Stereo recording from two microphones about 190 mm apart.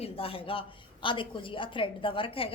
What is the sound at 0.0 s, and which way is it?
A woman's voice, 30° left (ahead or behind).